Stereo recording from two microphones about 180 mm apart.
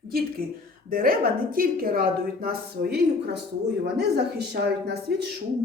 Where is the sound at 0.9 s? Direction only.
55° right (ahead or behind).